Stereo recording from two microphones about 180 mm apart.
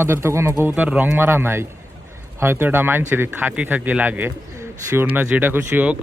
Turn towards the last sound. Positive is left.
turn(degrees=-10)  # may be behind; listen again after turning